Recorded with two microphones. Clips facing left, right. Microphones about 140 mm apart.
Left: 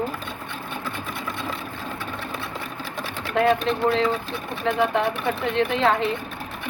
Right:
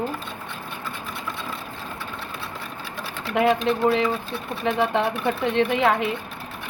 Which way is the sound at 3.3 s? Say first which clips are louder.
Even; 15° right (ahead or behind).